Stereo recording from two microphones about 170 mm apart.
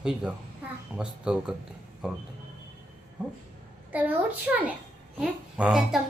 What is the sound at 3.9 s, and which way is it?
A woman's voice, 10° right (ahead or behind).